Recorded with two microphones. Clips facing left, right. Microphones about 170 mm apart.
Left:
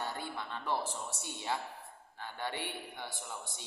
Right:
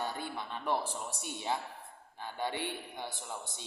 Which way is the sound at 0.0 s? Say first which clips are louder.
Right 2 dB; 15° right (ahead or behind).